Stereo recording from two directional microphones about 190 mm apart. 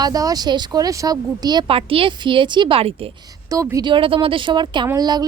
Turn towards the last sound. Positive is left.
turn(degrees=-20)  # may be behind; listen again after turning